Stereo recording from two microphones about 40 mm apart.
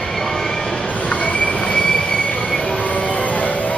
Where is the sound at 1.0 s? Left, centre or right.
Left.